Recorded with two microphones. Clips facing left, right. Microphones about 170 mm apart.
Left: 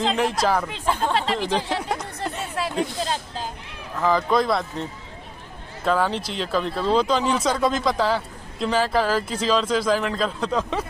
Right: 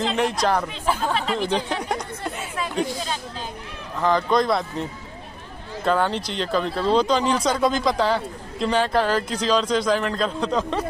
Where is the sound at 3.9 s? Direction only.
5° left (ahead or behind).